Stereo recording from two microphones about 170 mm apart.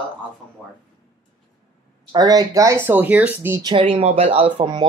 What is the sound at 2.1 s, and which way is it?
Speech, 20° right (ahead or behind).